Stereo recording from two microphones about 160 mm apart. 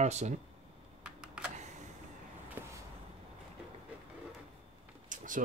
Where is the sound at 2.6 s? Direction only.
15° right (ahead or behind).